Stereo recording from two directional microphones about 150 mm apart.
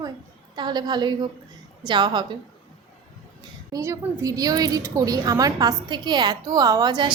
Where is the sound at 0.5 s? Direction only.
30° right (ahead or behind).